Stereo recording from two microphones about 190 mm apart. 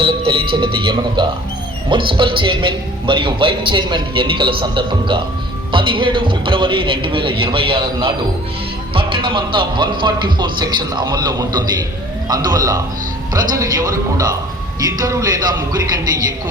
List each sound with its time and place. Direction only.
0.0 s music: 30° right (ahead or behind)
1.9 s speech: 25° right (ahead or behind)